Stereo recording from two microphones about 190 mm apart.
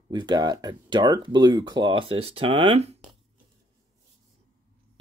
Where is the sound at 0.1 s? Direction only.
20° right (ahead or behind).